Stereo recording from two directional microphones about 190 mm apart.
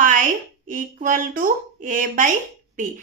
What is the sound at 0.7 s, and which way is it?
A woman's voice, 45° right (ahead or behind).